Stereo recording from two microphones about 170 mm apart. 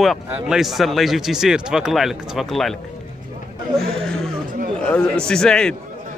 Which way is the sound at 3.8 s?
5° left (ahead or behind).